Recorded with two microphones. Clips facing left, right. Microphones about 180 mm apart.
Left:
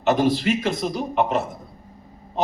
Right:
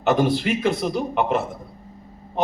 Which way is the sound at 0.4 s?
60° right (ahead or behind).